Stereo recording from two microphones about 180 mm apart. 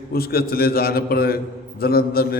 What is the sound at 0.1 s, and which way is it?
A man's voice, 55° left (ahead or behind).